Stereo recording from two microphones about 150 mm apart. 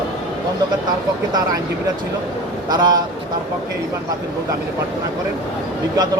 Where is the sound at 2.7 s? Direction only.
25° right (ahead or behind).